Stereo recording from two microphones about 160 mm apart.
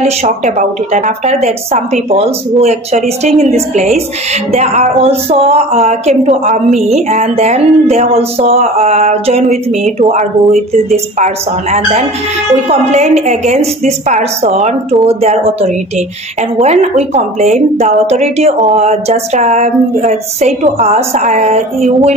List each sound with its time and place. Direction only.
0.0 s a woman's voice: 45° right (ahead or behind)
16.5 s a woman's voice: 45° right (ahead or behind)